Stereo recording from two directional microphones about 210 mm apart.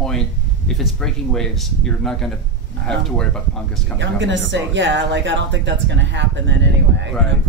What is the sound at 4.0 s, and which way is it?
Speech, 60° right (ahead or behind).